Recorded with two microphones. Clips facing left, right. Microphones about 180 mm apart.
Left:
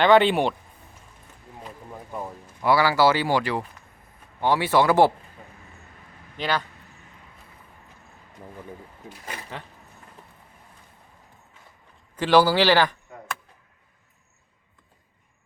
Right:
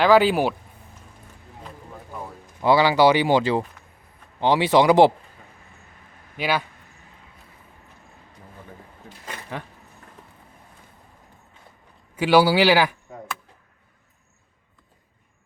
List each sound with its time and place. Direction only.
0.0 s speech: centre (ahead or behind)
2.6 s speech: 20° right (ahead or behind)
6.3 s speech: 10° right (ahead or behind)
12.1 s speech: 10° right (ahead or behind)